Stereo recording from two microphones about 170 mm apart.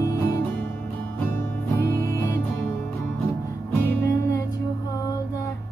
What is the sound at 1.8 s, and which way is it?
Music, 15° left (ahead or behind).